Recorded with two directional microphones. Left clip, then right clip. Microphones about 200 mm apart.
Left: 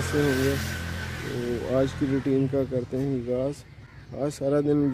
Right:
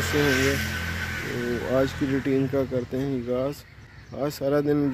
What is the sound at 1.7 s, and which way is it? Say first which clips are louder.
Speech: right 1 dB; centre (ahead or behind).